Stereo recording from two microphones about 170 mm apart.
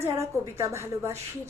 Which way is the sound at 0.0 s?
15° right (ahead or behind).